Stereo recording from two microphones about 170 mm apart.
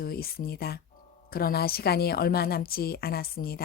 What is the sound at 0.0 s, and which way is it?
A woman's voice, 60° left (ahead or behind).